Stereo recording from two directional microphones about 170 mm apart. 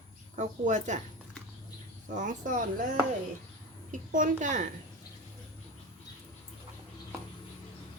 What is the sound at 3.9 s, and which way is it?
Speech, 50° right (ahead or behind).